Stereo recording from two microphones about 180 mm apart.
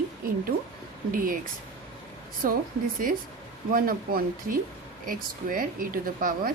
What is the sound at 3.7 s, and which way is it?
A woman's voice, 50° right (ahead or behind).